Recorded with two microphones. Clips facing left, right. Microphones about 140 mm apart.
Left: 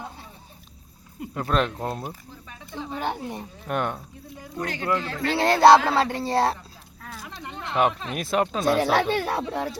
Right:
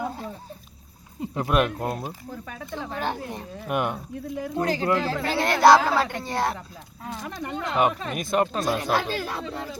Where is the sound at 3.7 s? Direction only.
10° right (ahead or behind).